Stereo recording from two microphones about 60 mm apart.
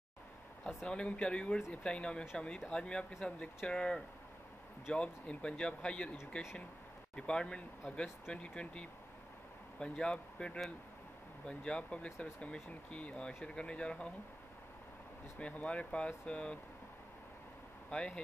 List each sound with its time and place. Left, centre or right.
0.8 s speech: centre
15.3 s speech: left
17.8 s speech: centre